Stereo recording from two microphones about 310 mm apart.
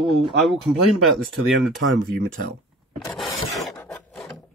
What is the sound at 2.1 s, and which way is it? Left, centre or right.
Speech, right.